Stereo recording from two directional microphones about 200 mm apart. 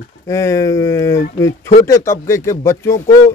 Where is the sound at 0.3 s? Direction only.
15° left (ahead or behind).